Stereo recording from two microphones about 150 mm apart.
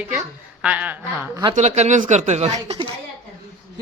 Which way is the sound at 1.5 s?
50° right (ahead or behind).